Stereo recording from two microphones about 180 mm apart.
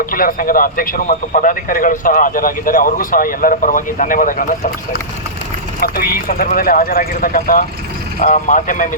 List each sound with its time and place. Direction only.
0.0 s a man's voice: 50° left (ahead or behind)
5.8 s a man's voice: 55° left (ahead or behind)